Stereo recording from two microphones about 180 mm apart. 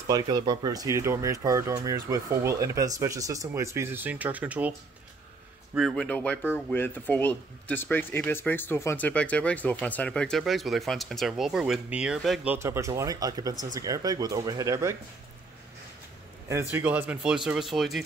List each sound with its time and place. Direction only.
0.1 s speech: 20° right (ahead or behind)
5.8 s speech: centre (ahead or behind)
12.5 s speech: 15° right (ahead or behind)
16.4 s speech: 15° right (ahead or behind)